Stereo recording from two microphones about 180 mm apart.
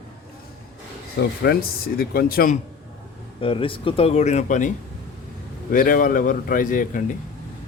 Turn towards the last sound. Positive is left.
turn(degrees=50)  # may be behind; listen again after turning